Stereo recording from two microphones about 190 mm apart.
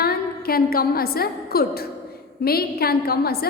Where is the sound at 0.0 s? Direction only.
55° left (ahead or behind).